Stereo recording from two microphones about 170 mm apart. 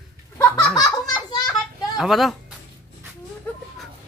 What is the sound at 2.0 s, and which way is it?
Speech, centre (ahead or behind).